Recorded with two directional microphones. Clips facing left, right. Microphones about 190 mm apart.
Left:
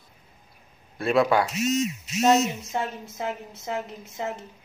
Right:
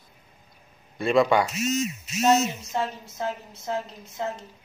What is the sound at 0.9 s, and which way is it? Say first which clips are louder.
Speech: right 1 dB; 5° left (ahead or behind).